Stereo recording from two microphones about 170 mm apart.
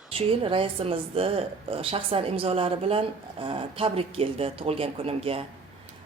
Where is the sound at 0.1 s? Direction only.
35° right (ahead or behind).